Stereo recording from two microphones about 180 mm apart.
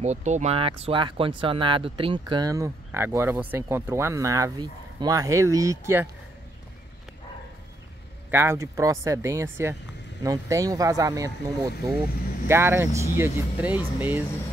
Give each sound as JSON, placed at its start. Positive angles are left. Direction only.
{"t": 0.0, "sound": "speech", "side_deg": -40}
{"t": 8.3, "sound": "speech", "side_deg": -15}